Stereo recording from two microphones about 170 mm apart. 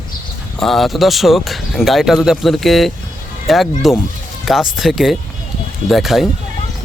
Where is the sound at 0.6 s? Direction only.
Centre (ahead or behind).